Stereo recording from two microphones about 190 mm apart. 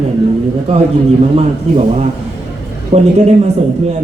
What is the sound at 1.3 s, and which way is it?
A man's voice, 30° right (ahead or behind).